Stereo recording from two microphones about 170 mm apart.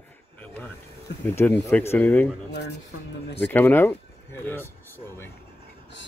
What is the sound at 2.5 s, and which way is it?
Speech, 80° left.